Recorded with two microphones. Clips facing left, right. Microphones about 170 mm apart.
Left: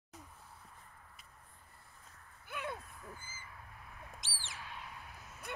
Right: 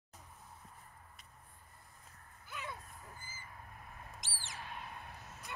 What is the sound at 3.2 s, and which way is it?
Owl, 40° right (ahead or behind).